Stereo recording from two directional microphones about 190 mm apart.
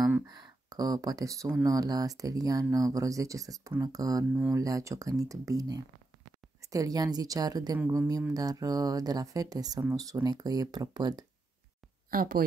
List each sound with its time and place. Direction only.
0.7 s speech: 20° right (ahead or behind)
12.1 s speech: 50° right (ahead or behind)